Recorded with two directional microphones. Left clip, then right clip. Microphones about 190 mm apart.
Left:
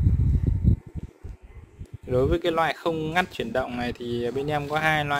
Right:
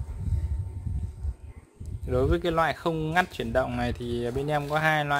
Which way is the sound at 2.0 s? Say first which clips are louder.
Left 3 dB; 20° left (ahead or behind).